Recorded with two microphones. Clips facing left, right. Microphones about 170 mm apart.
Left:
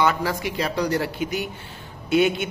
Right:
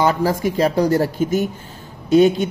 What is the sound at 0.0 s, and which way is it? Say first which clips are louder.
Speech: right 5 dB; 40° right (ahead or behind).